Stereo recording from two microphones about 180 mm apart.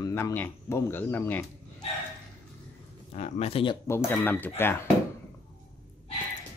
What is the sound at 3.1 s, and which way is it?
Speech, 40° left (ahead or behind).